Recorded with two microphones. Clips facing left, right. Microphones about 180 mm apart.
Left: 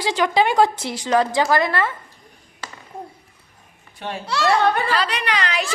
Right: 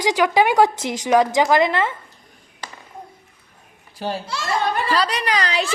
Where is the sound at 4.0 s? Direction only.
35° right (ahead or behind).